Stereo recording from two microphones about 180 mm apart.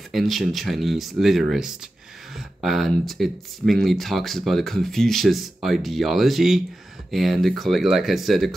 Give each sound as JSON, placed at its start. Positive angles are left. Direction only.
{"t": 0.1, "sound": "speech", "side_deg": 0}